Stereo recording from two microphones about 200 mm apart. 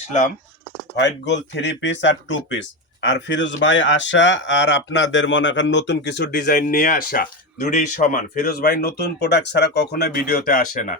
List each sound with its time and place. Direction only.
0.9 s speech: 60° left (ahead or behind); by 10.9 s 40° left (ahead or behind)